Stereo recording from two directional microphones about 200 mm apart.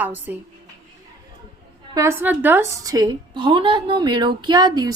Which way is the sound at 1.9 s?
10° right (ahead or behind).